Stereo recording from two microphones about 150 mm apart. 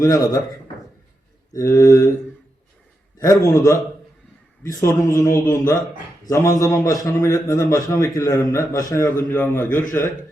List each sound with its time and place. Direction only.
0.0 s a man's voice: 25° left (ahead or behind)
1.5 s a man's voice: 25° left (ahead or behind)
3.2 s a man's voice: 20° left (ahead or behind)